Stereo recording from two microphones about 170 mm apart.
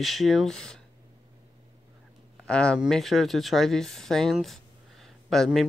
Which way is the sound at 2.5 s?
5° left (ahead or behind).